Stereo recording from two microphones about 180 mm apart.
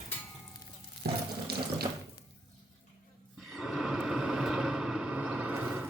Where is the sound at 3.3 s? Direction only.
Centre (ahead or behind).